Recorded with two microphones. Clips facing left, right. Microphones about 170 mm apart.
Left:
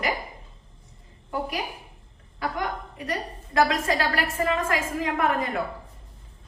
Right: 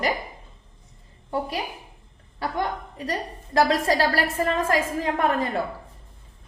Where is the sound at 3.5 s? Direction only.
35° right (ahead or behind).